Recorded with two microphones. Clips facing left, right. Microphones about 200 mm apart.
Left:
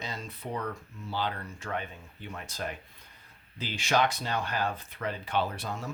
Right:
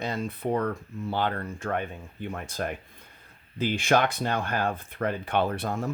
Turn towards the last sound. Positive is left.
turn(degrees=-55)  # may be behind; listen again after turning